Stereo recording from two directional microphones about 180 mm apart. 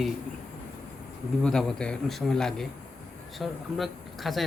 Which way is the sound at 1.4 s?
5° left (ahead or behind).